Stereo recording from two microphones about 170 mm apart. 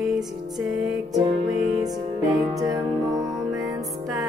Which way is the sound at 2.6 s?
20° right (ahead or behind).